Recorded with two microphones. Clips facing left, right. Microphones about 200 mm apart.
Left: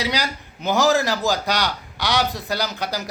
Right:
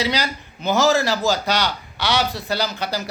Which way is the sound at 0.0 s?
15° left (ahead or behind).